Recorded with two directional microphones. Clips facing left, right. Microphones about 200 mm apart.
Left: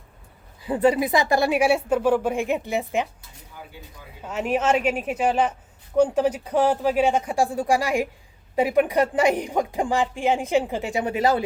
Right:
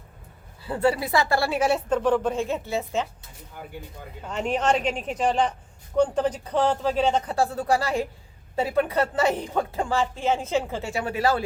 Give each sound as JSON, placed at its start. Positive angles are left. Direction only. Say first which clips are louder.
{"t": 0.6, "sound": "speech", "louder": "left 4 dB", "side_deg": 15}
{"t": 4.2, "sound": "speech", "louder": "left 2 dB", "side_deg": 5}